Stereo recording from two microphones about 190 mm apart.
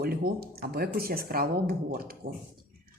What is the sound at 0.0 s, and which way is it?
Speech, 50° right (ahead or behind).